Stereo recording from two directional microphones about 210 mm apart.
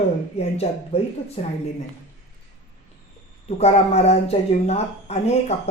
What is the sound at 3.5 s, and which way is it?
A woman's voice, 30° left (ahead or behind).